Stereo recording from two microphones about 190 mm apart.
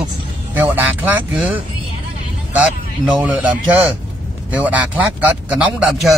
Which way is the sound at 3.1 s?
5° right (ahead or behind).